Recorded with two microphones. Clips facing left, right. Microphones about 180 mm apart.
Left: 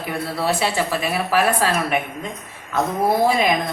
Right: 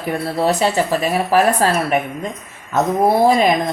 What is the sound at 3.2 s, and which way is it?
Speech, 40° right (ahead or behind).